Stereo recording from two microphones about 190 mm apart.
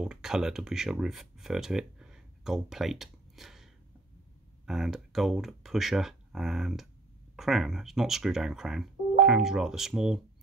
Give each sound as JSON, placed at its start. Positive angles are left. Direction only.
{"t": 0.0, "sound": "speech", "side_deg": -5}